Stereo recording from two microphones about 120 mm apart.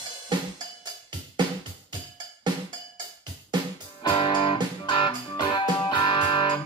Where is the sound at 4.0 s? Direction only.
45° left (ahead or behind).